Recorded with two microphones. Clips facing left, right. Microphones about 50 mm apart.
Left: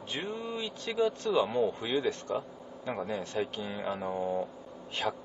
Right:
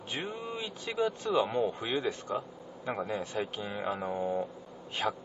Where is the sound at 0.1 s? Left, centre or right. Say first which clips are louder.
Left 1 dB; centre.